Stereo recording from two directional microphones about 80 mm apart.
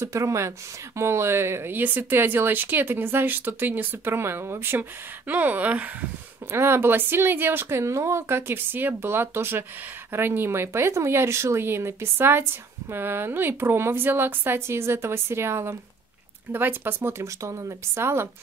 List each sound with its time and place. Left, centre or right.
0.0 s speech: right; by 6.0 s centre
6.5 s speech: right
7.8 s speech: right